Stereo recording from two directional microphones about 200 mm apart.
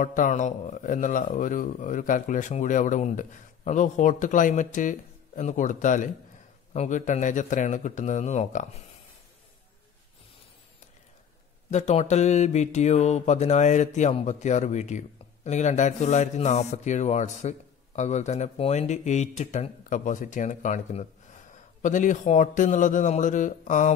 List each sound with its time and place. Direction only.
0.0 s mantra: 40° left (ahead or behind)
11.7 s mantra: 35° left (ahead or behind)